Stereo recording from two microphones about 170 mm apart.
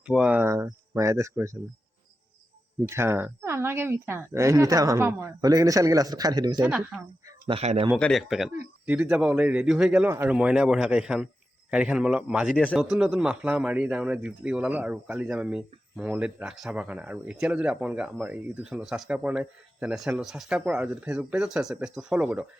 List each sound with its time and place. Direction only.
0.0 s a sound: 5° right (ahead or behind)
2.7 s speech: 15° right (ahead or behind)
6.7 s a man's voice: 5° right (ahead or behind)
7.3 s speech: 30° right (ahead or behind)
7.9 s a man's voice: 5° left (ahead or behind)